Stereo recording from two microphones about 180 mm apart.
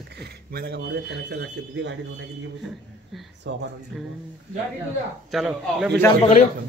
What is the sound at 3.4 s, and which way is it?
Speech, 90° right.